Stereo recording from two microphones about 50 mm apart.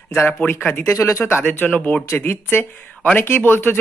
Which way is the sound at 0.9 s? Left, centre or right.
Left.